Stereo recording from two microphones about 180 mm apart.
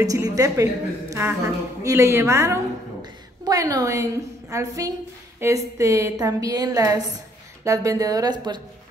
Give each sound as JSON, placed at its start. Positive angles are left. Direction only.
{"t": 0.0, "sound": "a woman's voice", "side_deg": -20}